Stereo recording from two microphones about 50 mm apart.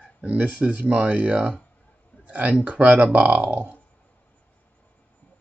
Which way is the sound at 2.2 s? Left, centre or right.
Right.